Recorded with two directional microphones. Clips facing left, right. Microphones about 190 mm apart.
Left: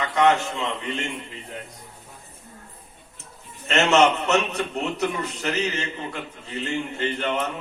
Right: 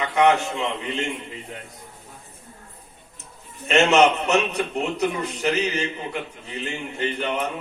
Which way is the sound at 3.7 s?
15° right (ahead or behind).